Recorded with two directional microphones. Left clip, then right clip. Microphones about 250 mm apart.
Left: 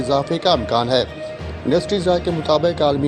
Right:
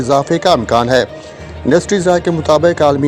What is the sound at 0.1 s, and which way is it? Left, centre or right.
Speech, right.